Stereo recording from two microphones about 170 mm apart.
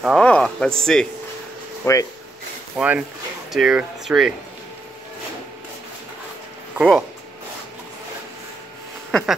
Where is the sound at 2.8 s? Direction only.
5° right (ahead or behind).